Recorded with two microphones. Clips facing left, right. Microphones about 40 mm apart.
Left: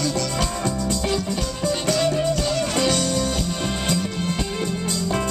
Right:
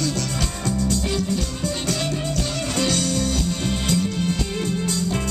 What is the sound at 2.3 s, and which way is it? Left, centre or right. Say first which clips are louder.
Music: left 3 dB; left.